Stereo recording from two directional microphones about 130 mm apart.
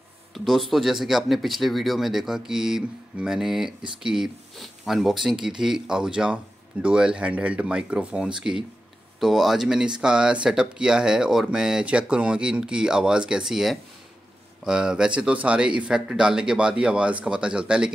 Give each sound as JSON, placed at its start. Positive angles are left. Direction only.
{"t": 0.3, "sound": "speech", "side_deg": 0}